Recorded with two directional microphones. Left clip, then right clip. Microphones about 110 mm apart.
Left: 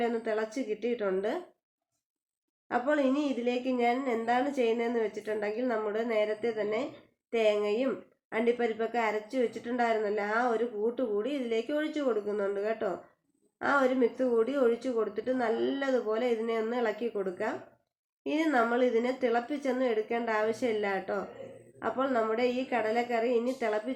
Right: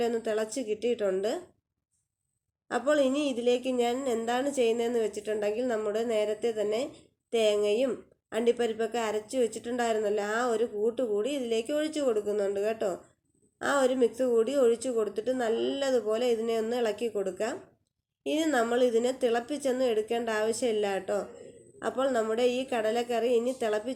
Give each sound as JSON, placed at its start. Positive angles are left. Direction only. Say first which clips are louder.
{"t": 0.0, "sound": "speech", "louder": "right 2 dB", "side_deg": -35}
{"t": 2.6, "sound": "speech", "louder": "right 2 dB", "side_deg": -35}